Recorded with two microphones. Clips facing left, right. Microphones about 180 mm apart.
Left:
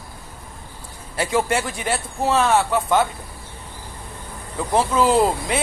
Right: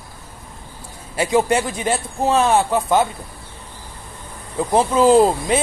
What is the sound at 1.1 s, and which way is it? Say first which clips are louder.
A man's voice: right 4 dB; 20° right (ahead or behind).